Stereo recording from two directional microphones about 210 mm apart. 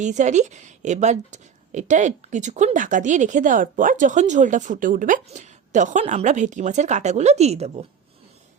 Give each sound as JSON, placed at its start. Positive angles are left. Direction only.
{"t": 0.0, "sound": "a woman's voice", "side_deg": -35}